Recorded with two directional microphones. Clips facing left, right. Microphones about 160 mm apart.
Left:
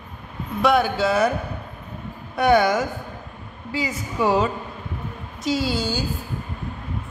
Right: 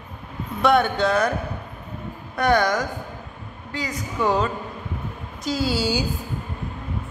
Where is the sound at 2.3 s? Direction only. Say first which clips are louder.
Left 2 dB; 5° left (ahead or behind).